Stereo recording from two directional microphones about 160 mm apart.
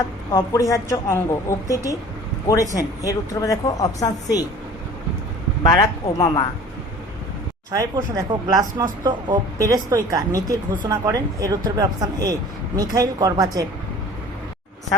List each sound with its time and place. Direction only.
0.3 s speech: 20° left (ahead or behind)
6.1 s speech: 25° left (ahead or behind)
7.7 s speech: 20° right (ahead or behind)